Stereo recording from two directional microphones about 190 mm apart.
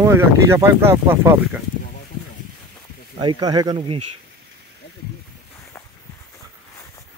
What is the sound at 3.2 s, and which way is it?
Speech, 20° right (ahead or behind).